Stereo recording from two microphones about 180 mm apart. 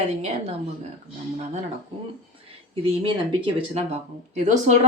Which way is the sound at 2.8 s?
30° right (ahead or behind).